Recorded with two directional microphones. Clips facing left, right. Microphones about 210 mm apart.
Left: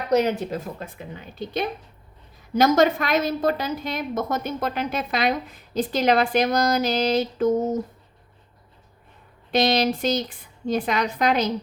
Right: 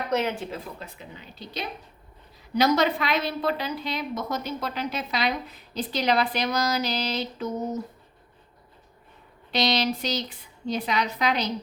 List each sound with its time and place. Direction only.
0.1 s a woman's voice: 40° left (ahead or behind)
9.5 s a woman's voice: 50° left (ahead or behind)